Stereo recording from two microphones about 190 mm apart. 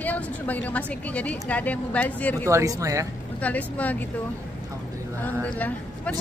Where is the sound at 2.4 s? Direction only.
15° right (ahead or behind).